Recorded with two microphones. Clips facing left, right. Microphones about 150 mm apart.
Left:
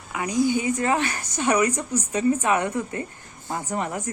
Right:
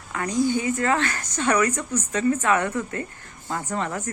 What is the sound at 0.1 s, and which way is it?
A woman's voice, 10° left (ahead or behind).